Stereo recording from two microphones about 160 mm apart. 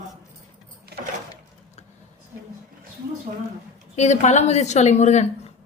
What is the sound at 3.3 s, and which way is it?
Speech, 50° right (ahead or behind).